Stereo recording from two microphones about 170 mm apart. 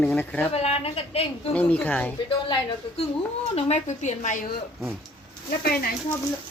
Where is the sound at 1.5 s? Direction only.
10° left (ahead or behind).